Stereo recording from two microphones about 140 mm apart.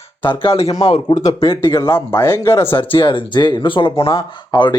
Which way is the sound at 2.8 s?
40° left (ahead or behind).